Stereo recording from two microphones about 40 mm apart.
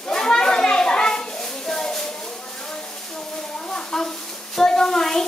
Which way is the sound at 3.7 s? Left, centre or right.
Centre.